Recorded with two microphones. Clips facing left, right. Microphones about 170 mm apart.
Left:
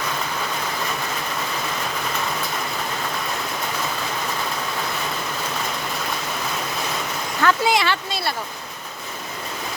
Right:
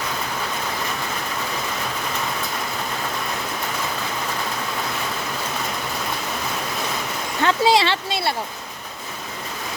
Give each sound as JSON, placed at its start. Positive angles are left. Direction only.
{"t": 7.4, "sound": "speech", "side_deg": -30}